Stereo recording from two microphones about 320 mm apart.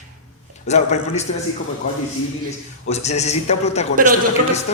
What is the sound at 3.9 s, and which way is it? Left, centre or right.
Speech, right.